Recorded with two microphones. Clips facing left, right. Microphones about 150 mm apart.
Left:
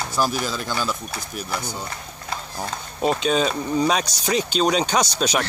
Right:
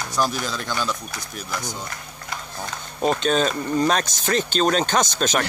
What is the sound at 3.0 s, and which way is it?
Speech, 5° left (ahead or behind).